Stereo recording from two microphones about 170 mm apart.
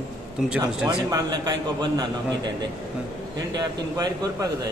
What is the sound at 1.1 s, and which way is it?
Speech, 25° right (ahead or behind).